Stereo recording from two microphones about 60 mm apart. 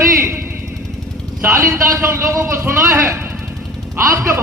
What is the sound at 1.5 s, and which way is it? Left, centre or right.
A man's voice, right.